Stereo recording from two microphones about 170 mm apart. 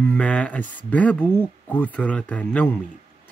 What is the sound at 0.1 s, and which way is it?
Speech, 5° left (ahead or behind).